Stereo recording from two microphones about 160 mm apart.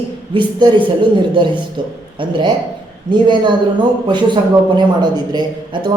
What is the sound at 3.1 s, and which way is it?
A man's voice, 30° right (ahead or behind).